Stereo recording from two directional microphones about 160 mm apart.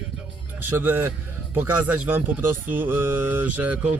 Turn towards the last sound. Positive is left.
turn(degrees=-10)  # may be behind; listen again after turning